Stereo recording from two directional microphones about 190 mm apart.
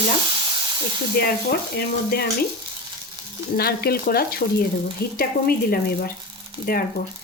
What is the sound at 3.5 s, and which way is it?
Speech, 55° left (ahead or behind).